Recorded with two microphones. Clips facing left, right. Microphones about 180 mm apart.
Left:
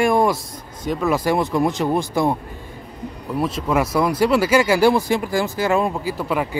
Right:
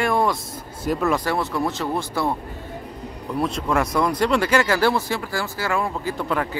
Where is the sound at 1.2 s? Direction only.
15° left (ahead or behind).